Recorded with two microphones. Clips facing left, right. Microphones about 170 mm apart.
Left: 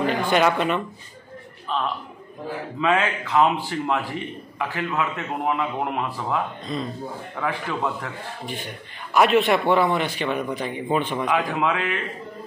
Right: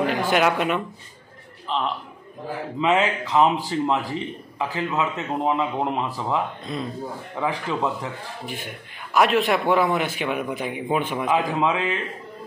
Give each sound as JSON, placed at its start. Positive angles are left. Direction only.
{"t": 0.0, "sound": "speech", "side_deg": -5}
{"t": 2.8, "sound": "a man's voice", "side_deg": -20}
{"t": 6.6, "sound": "speech", "side_deg": -5}
{"t": 7.3, "sound": "a man's voice", "side_deg": -20}
{"t": 9.1, "sound": "a man's voice", "side_deg": 0}
{"t": 11.2, "sound": "a man's voice", "side_deg": -25}